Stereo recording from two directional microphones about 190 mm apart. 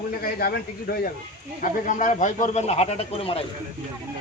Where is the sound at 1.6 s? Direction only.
40° left (ahead or behind).